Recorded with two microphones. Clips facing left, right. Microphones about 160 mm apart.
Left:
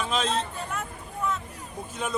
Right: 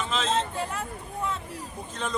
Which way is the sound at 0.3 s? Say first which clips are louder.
Right 2 dB; 25° right (ahead or behind).